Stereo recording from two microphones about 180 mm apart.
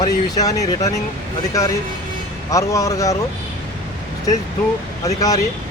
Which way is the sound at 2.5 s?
20° left (ahead or behind).